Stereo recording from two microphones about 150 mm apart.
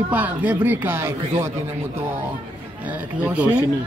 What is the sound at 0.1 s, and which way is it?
Speech, 10° right (ahead or behind).